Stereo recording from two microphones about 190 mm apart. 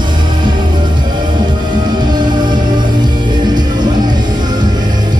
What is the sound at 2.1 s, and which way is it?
Music, 25° right (ahead or behind).